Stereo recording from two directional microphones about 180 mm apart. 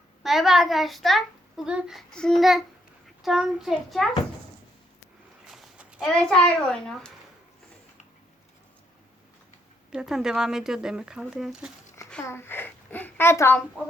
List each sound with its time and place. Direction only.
0.2 s a child's voice: centre (ahead or behind)
5.5 s speech: 5° right (ahead or behind)
9.9 s a child's voice: 5° right (ahead or behind)
12.1 s a woman's voice: 15° left (ahead or behind)
13.8 s speech: 5° right (ahead or behind)